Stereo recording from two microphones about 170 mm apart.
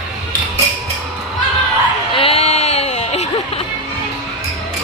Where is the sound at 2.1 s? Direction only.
35° left (ahead or behind).